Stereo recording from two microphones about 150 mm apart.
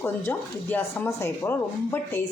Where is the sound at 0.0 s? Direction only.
15° left (ahead or behind).